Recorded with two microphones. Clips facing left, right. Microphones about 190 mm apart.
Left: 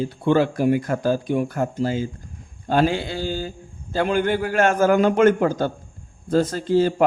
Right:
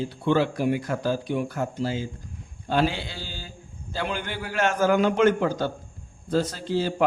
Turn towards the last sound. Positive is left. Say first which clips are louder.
# left 7 dB
turn(degrees=50)  # may be behind; listen again after turning